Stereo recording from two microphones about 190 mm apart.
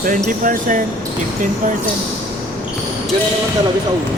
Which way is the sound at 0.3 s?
45° right (ahead or behind).